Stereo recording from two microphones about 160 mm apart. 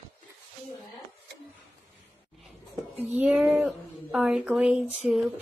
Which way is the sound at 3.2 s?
Centre (ahead or behind).